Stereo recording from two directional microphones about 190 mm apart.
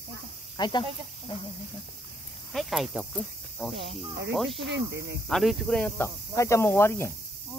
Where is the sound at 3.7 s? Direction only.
65° right (ahead or behind).